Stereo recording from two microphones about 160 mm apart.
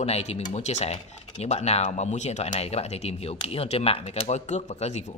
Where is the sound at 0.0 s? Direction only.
40° left (ahead or behind).